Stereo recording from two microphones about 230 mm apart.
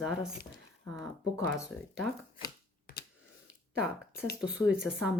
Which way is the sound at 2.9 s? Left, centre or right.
Left.